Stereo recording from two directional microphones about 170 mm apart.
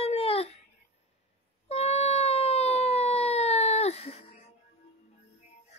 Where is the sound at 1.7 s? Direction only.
40° left (ahead or behind).